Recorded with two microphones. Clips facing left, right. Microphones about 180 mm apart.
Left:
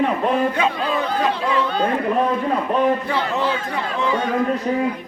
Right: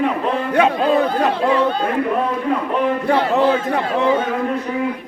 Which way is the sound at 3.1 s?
60° right (ahead or behind).